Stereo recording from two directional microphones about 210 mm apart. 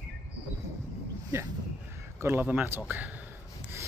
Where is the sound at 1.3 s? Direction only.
10° right (ahead or behind).